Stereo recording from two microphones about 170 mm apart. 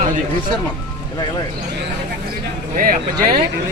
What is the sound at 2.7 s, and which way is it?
Speech, 55° right (ahead or behind).